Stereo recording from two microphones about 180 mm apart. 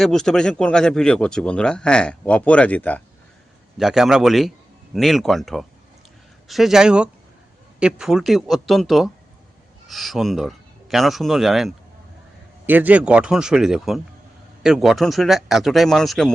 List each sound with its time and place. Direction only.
0.0 s a man's voice: 5° left (ahead or behind)
3.8 s a man's voice: centre (ahead or behind)